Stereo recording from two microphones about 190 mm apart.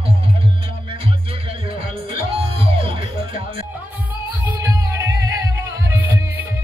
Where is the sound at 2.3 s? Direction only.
30° right (ahead or behind).